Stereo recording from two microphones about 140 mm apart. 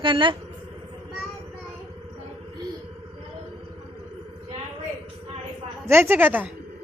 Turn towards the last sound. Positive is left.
turn(degrees=-15)  # may be behind; listen again after turning